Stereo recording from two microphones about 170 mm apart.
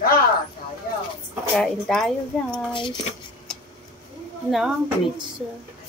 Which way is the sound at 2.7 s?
30° left (ahead or behind).